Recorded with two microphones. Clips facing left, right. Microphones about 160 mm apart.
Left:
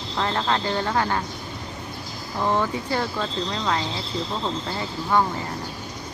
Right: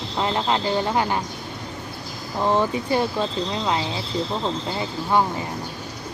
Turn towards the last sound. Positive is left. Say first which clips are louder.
# right 1 dB
turn(degrees=-20)  # may be behind; listen again after turning